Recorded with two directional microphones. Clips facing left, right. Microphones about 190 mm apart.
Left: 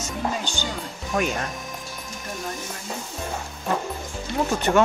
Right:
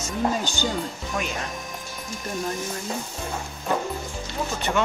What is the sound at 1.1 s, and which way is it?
Speech, 55° left (ahead or behind).